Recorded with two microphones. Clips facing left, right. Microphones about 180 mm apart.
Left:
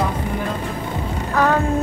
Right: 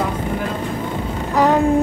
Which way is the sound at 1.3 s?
15° right (ahead or behind).